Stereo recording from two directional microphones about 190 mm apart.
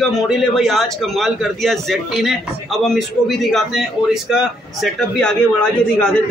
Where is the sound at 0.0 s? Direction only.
Centre (ahead or behind).